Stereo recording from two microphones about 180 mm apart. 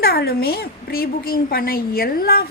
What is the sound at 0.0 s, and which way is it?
A woman's voice, 60° left (ahead or behind).